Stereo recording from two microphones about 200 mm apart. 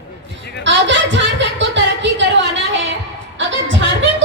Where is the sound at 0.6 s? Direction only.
65° right (ahead or behind).